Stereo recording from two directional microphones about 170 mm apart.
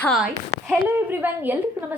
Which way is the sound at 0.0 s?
Centre (ahead or behind).